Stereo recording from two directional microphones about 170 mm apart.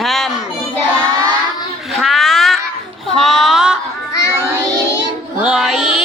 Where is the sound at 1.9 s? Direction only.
Centre (ahead or behind).